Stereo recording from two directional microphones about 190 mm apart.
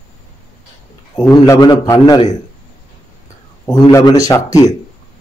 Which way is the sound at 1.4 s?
20° left (ahead or behind).